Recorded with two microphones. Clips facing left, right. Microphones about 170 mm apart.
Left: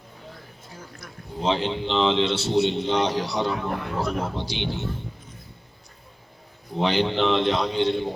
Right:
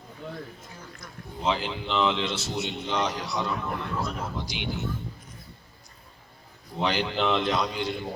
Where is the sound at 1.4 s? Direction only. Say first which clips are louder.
Left 4 dB; 30° left (ahead or behind).